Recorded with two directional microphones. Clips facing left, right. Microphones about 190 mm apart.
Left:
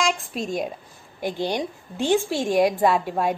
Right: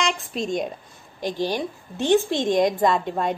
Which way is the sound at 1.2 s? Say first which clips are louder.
Even; 15° left (ahead or behind).